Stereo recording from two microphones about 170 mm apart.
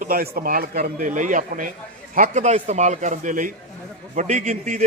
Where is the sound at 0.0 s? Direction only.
60° right (ahead or behind).